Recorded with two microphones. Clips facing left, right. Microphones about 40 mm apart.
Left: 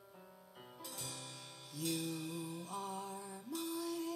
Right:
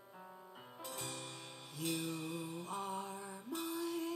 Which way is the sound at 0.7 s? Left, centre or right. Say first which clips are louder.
Right 4 dB; right.